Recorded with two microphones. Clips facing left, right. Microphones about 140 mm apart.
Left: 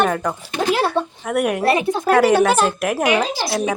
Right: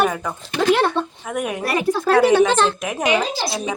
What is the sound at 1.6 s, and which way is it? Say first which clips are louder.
Speech: right 1 dB; 20° left (ahead or behind).